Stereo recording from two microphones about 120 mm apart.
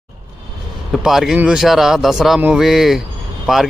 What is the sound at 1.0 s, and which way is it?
Speech, 5° right (ahead or behind).